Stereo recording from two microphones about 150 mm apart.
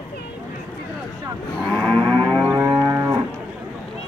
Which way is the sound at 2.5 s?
25° right (ahead or behind).